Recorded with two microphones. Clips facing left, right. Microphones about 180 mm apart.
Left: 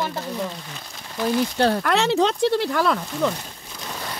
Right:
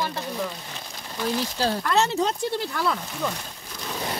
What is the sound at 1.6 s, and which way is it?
Speech, 60° left (ahead or behind).